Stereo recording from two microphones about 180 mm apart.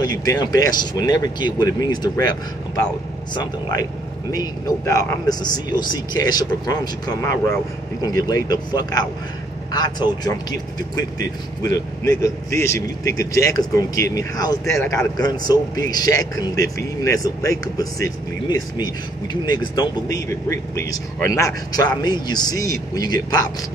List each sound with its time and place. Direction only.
0.2 s speech: 20° left (ahead or behind)
11.6 s speech: 20° left (ahead or behind)